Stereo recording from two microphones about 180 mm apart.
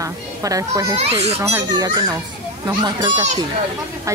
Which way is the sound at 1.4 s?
20° right (ahead or behind).